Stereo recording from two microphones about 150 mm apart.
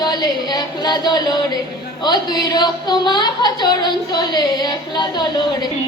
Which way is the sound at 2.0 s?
30° left (ahead or behind).